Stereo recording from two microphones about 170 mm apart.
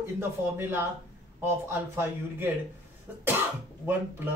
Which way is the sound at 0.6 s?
15° right (ahead or behind).